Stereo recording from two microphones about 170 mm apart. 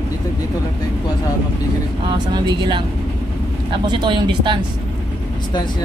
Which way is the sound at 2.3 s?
25° right (ahead or behind).